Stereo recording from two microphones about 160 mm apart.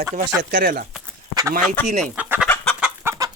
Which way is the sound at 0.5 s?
65° right (ahead or behind).